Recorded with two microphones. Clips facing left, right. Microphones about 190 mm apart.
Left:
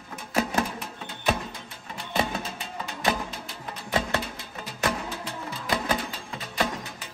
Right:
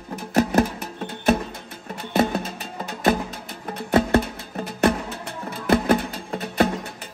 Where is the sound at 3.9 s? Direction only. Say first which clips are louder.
Right 9 dB; 55° right (ahead or behind).